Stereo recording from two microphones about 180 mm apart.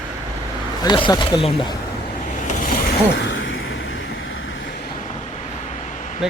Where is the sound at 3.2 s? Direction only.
90° left.